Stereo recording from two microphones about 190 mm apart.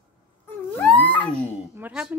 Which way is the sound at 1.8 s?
5° right (ahead or behind).